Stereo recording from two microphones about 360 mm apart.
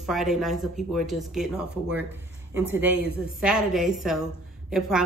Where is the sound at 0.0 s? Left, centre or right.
Centre.